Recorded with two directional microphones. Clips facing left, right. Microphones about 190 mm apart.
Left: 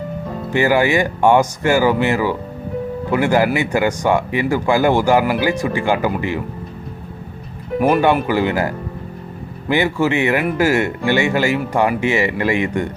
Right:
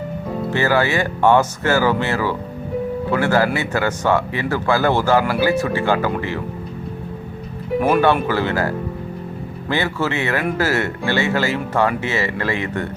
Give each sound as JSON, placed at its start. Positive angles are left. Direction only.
{"t": 0.5, "sound": "speech", "side_deg": 15}
{"t": 7.8, "sound": "speech", "side_deg": 10}